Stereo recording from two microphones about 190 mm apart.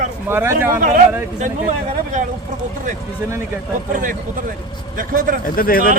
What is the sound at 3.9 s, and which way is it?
Speech, 45° right (ahead or behind).